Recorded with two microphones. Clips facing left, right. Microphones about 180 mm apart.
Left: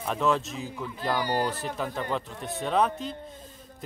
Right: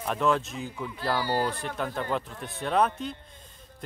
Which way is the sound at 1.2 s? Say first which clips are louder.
Even; 15° left (ahead or behind).